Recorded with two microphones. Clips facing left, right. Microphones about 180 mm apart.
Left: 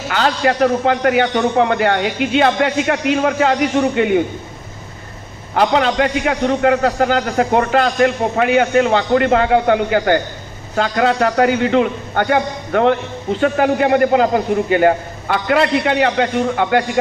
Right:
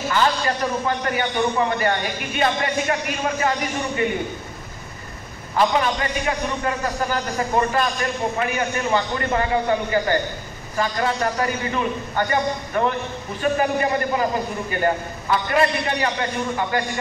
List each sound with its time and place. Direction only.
0.1 s a man's voice: 70° left (ahead or behind)
5.5 s a man's voice: 70° left (ahead or behind)